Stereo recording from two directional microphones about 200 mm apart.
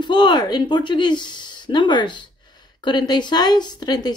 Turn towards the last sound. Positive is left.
turn(degrees=20)  # may be behind; listen again after turning